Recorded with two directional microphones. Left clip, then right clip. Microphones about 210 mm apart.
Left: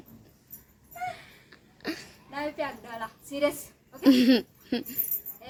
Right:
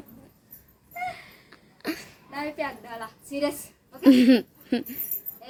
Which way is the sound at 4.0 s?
5° right (ahead or behind).